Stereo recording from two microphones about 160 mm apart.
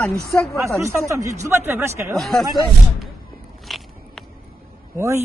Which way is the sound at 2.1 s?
Centre (ahead or behind).